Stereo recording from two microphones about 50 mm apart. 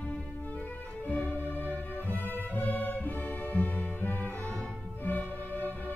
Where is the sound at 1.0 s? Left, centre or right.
Left.